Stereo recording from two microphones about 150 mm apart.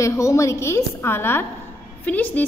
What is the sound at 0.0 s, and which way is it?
A woman's voice, 20° left (ahead or behind).